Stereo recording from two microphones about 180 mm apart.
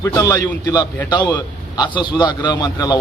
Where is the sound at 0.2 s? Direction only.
20° left (ahead or behind).